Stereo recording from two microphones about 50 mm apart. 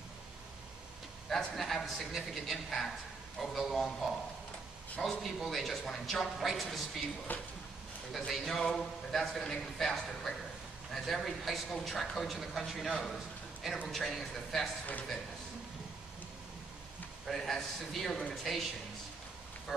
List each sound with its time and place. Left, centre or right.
1.6 s a man's voice: centre
5.2 s a man's voice: centre
7.3 s speech: left
8.1 s a man's voice: centre
17.3 s a man's voice: centre